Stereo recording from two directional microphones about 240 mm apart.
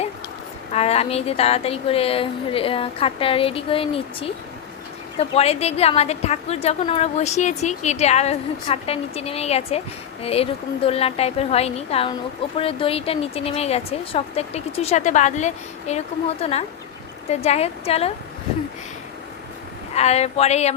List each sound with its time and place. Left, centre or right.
0.7 s a woman's voice: left
5.3 s a woman's voice: left
19.9 s a woman's voice: left